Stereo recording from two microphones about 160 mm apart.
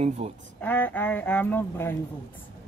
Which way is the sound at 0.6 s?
10° left (ahead or behind).